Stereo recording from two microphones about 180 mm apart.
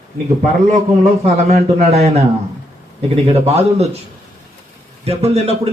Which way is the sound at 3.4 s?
35° right (ahead or behind).